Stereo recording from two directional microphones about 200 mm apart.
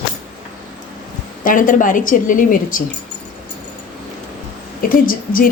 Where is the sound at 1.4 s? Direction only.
40° left (ahead or behind).